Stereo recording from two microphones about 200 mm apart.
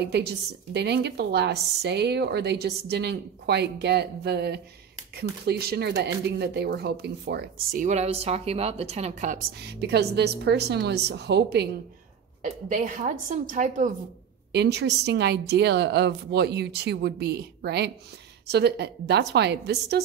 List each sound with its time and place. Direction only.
0.0 s a woman's voice: 55° right (ahead or behind); by 9.4 s 35° right (ahead or behind)
9.6 s a woman's voice: 55° right (ahead or behind)
12.4 s a woman's voice: 40° right (ahead or behind)
14.5 s a woman's voice: 55° right (ahead or behind)